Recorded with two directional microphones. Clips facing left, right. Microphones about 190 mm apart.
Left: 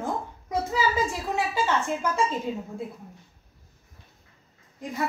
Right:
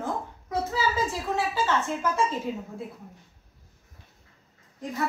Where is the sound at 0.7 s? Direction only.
15° left (ahead or behind).